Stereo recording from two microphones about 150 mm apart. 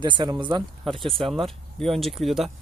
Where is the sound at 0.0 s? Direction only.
30° right (ahead or behind).